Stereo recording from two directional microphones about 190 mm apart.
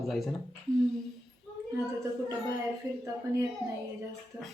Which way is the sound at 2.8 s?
15° right (ahead or behind).